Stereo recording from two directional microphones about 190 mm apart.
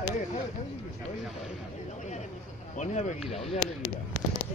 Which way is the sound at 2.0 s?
35° left (ahead or behind).